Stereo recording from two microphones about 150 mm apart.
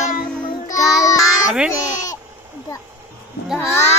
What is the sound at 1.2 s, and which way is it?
Music, centre (ahead or behind).